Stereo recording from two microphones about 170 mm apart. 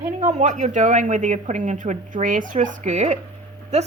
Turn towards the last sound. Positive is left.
turn(degrees=-40)  # may be behind; listen again after turning